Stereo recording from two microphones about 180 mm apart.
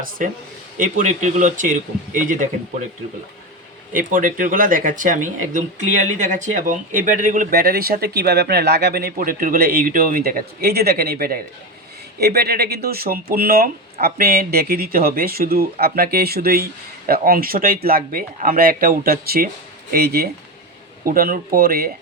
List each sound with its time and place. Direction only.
0.2 s speech: 45° right (ahead or behind)
3.9 s speech: 50° right (ahead or behind)